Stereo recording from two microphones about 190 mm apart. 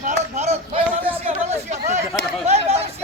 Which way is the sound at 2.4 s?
35° right (ahead or behind).